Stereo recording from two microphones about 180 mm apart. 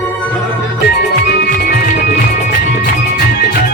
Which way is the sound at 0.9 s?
60° left (ahead or behind).